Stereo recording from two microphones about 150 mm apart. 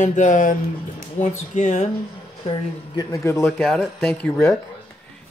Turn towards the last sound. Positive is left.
turn(degrees=5)  # may be behind; listen again after turning